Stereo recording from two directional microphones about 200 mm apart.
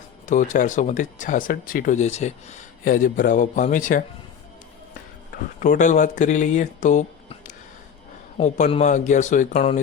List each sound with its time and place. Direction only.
0.3 s speech: 40° left (ahead or behind)
5.5 s speech: 40° left (ahead or behind)